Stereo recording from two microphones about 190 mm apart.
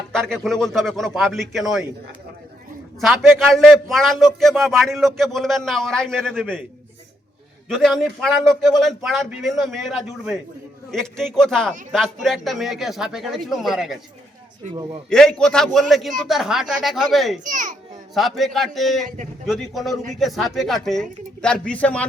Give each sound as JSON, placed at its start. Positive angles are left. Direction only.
{"t": 0.1, "sound": "a man's voice", "side_deg": 5}
{"t": 3.0, "sound": "a man's voice", "side_deg": 0}
{"t": 7.7, "sound": "a man's voice", "side_deg": 0}
{"t": 15.1, "sound": "a man's voice", "side_deg": 5}
{"t": 17.4, "sound": "a child's voice", "side_deg": -45}
{"t": 18.1, "sound": "a man's voice", "side_deg": 0}
{"t": 19.0, "sound": "speech", "side_deg": -40}
{"t": 19.5, "sound": "a man's voice", "side_deg": 0}